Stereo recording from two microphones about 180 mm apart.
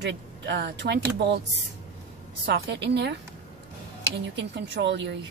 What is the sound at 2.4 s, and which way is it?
Speech, 70° right (ahead or behind).